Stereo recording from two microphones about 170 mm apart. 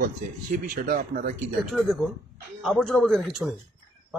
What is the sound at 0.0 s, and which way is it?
Speech, 55° right (ahead or behind).